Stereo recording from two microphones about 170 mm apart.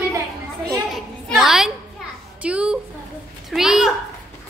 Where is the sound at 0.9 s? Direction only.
Centre (ahead or behind).